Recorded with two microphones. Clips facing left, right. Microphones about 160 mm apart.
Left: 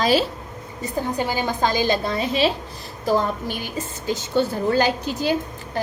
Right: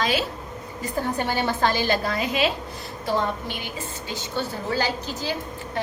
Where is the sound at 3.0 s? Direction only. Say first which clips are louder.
Left 4 dB; 40° left (ahead or behind).